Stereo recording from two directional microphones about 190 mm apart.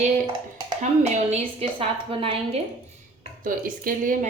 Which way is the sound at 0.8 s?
40° right (ahead or behind).